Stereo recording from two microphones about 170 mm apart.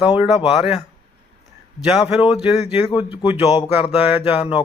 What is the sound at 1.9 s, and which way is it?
A man's voice, 5° right (ahead or behind).